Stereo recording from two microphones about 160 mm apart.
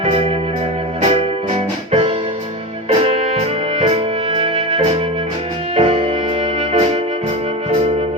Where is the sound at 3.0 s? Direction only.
40° right (ahead or behind).